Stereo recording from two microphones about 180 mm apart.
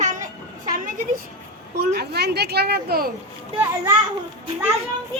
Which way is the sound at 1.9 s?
65° right (ahead or behind).